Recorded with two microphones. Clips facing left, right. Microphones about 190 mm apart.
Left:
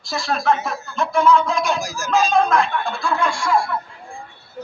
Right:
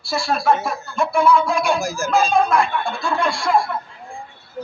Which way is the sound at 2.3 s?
10° right (ahead or behind).